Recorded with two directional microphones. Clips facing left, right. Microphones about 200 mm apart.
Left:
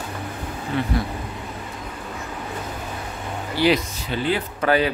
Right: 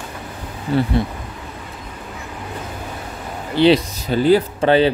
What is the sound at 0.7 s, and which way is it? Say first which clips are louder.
Speech: right 7 dB; 35° right (ahead or behind).